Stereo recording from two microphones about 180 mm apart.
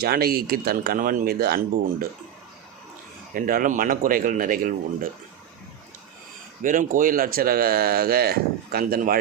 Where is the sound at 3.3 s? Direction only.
50° right (ahead or behind).